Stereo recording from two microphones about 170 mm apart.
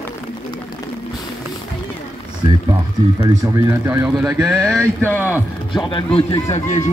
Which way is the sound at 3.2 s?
20° right (ahead or behind).